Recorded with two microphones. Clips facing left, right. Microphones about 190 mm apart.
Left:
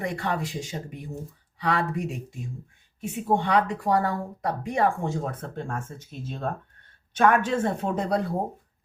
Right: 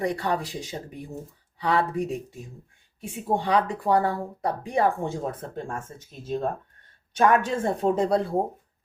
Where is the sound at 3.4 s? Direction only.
30° right (ahead or behind).